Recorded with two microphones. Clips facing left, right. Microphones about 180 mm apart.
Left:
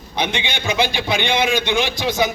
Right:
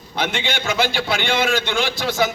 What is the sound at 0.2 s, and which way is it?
A man's voice, 15° left (ahead or behind).